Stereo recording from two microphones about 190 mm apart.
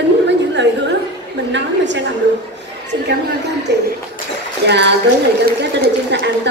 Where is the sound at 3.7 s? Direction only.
65° right (ahead or behind).